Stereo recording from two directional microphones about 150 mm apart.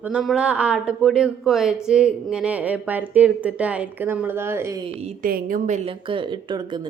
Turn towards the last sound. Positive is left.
turn(degrees=-30)  # may be behind; listen again after turning